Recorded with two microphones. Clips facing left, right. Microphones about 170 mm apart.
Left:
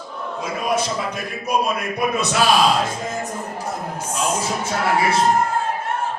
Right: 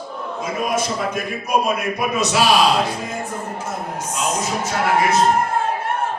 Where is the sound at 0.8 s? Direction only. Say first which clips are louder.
Right 2 dB; 55° right (ahead or behind).